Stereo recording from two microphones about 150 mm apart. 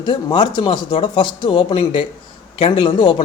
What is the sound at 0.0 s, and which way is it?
Speech, 30° left (ahead or behind).